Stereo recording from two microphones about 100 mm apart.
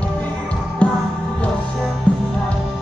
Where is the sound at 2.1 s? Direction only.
10° left (ahead or behind).